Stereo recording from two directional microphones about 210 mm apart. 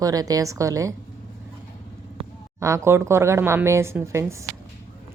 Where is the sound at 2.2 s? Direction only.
25° right (ahead or behind).